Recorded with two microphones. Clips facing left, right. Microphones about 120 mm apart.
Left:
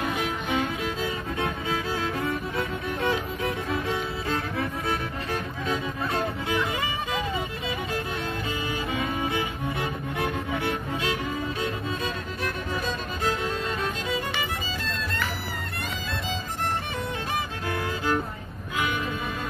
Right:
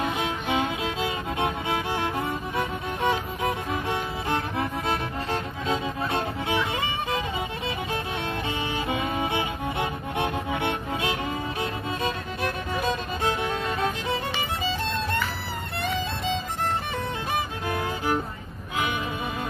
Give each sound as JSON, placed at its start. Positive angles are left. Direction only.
{"t": 0.2, "sound": "music", "side_deg": -25}
{"t": 1.7, "sound": "music", "side_deg": -15}
{"t": 4.8, "sound": "music", "side_deg": -25}
{"t": 9.8, "sound": "music", "side_deg": -25}
{"t": 17.6, "sound": "music", "side_deg": -20}